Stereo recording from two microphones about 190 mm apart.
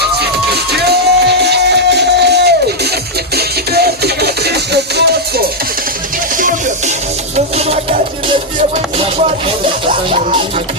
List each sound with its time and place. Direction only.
0.0 s music: 60° right (ahead or behind)
6.3 s music: 45° right (ahead or behind)
7.3 s music: 35° right (ahead or behind)